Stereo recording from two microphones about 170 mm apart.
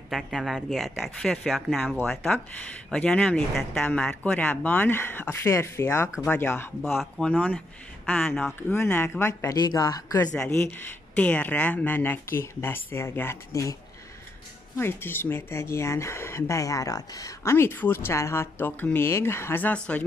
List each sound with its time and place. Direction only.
0.1 s a woman's voice: centre (ahead or behind); by 10.3 s 20° left (ahead or behind)
10.3 s speech: 10° left (ahead or behind)
14.8 s speech: 15° left (ahead or behind)